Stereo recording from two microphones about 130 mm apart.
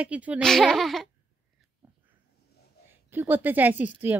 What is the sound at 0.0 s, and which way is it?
Speech, 10° right (ahead or behind).